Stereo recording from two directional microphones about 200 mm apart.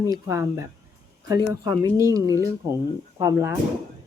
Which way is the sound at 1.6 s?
20° right (ahead or behind).